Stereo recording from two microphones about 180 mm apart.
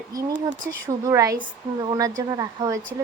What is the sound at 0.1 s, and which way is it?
Speech, 20° right (ahead or behind).